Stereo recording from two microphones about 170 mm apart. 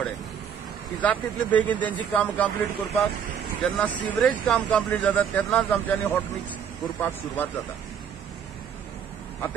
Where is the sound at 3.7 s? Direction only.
10° left (ahead or behind).